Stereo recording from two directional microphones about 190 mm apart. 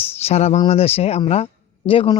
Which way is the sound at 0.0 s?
35° left (ahead or behind).